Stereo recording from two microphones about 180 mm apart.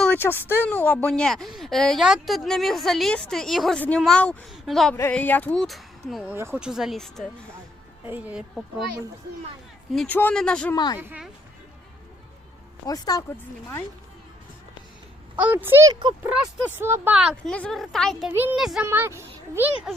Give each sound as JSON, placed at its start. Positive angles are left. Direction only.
{"t": 0.0, "sound": "speech", "side_deg": 10}
{"t": 6.3, "sound": "a child's voice", "side_deg": -10}
{"t": 9.9, "sound": "speech", "side_deg": 5}
{"t": 10.8, "sound": "speech", "side_deg": 25}
{"t": 11.0, "sound": "a child's voice", "side_deg": -10}
{"t": 12.8, "sound": "speech", "side_deg": 20}
{"t": 15.4, "sound": "a child's voice", "side_deg": -10}
{"t": 16.2, "sound": "speech", "side_deg": -10}
{"t": 18.3, "sound": "a child's voice", "side_deg": -10}
{"t": 18.9, "sound": "a child's voice", "side_deg": -15}